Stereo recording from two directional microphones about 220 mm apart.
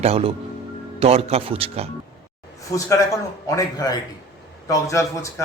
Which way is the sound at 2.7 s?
15° left (ahead or behind).